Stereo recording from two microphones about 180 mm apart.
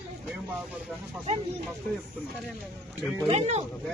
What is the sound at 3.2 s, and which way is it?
Speech, 35° right (ahead or behind).